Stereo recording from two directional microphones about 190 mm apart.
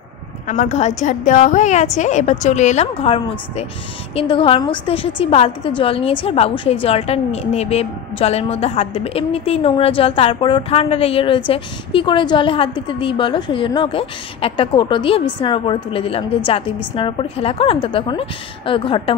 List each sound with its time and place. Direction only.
0.5 s a woman's voice: 40° left (ahead or behind)